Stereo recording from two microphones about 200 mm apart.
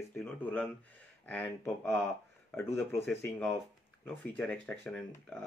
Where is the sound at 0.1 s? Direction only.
10° left (ahead or behind).